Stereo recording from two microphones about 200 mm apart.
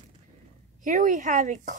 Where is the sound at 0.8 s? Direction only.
40° right (ahead or behind).